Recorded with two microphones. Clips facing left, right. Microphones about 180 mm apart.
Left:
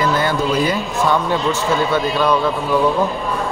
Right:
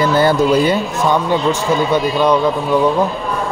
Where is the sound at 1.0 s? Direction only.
15° right (ahead or behind).